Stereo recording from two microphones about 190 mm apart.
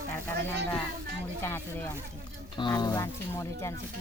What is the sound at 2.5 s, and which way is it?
Speech, 20° left (ahead or behind).